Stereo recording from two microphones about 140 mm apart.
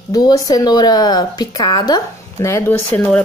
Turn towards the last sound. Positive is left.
turn(degrees=10)  # may be behind; listen again after turning